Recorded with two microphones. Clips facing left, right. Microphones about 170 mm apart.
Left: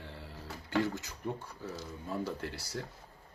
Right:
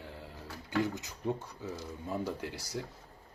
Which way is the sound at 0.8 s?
20° right (ahead or behind).